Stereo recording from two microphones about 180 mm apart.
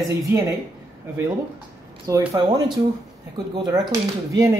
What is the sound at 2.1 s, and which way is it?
Speech, 15° right (ahead or behind).